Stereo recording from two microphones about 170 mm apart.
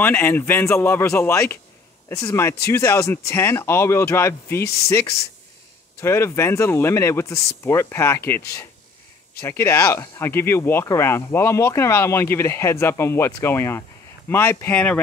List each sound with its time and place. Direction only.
0.0 s speech: 10° left (ahead or behind)
5.9 s speech: 15° left (ahead or behind)
9.4 s speech: 15° left (ahead or behind)